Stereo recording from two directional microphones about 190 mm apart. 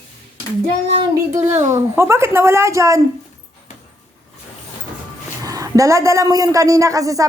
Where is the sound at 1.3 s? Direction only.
10° right (ahead or behind).